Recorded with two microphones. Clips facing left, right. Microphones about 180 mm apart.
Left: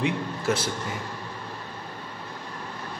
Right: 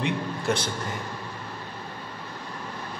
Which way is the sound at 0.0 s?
5° left (ahead or behind).